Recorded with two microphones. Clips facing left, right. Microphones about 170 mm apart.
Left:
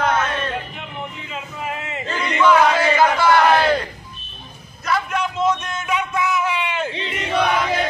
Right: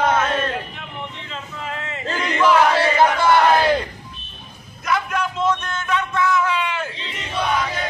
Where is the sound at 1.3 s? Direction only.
15° left (ahead or behind).